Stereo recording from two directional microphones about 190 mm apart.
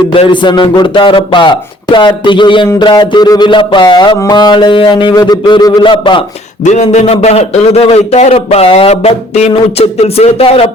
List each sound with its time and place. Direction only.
0.1 s music: 25° left (ahead or behind)
6.7 s a man's voice: 40° left (ahead or behind)